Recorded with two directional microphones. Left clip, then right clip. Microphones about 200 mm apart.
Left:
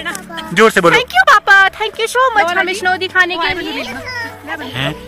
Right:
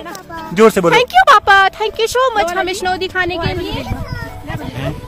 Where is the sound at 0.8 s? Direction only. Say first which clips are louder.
Even; 60° right (ahead or behind).